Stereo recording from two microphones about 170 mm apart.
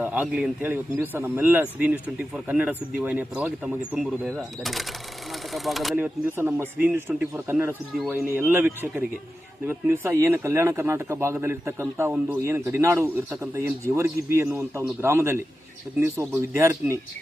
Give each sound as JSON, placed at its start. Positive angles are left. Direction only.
{"t": 0.0, "sound": "speech", "side_deg": -5}
{"t": 5.9, "sound": "speech", "side_deg": -10}